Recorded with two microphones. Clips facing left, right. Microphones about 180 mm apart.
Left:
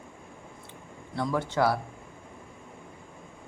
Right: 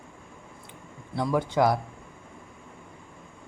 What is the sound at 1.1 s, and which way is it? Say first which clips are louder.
Speech: right 3 dB; 15° right (ahead or behind).